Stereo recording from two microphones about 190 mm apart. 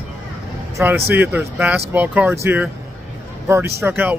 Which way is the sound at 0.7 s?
10° right (ahead or behind).